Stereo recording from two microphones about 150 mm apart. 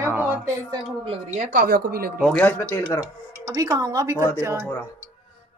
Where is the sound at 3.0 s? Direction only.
20° right (ahead or behind).